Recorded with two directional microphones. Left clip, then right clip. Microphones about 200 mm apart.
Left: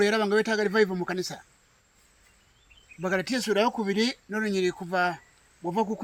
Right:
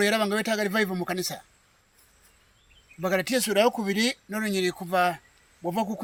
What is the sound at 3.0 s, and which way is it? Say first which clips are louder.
Speech: right 2 dB; 45° right (ahead or behind).